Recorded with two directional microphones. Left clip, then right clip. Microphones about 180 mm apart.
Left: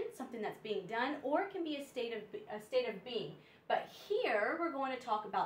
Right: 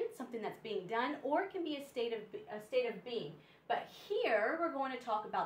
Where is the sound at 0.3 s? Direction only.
5° right (ahead or behind).